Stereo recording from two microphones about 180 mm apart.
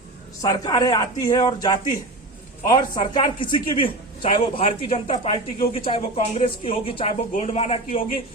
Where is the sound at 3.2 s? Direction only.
25° left (ahead or behind).